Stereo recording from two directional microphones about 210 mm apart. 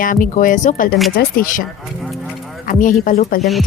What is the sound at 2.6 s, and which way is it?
Speech, 40° left (ahead or behind).